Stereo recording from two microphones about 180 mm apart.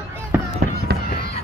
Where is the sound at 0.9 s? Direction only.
60° right (ahead or behind).